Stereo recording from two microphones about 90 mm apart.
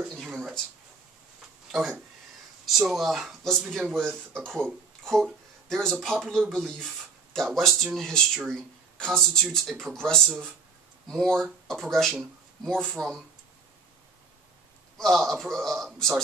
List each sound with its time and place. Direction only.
0.1 s a sound: centre (ahead or behind)
1.7 s a man's voice: 5° right (ahead or behind)
15.0 s speech: 5° left (ahead or behind)